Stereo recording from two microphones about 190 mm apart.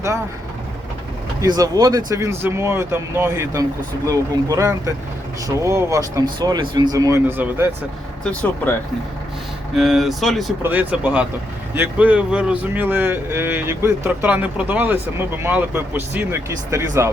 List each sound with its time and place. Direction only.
1.4 s speech: 20° right (ahead or behind)
8.2 s speech: 5° left (ahead or behind)
9.7 s speech: centre (ahead or behind)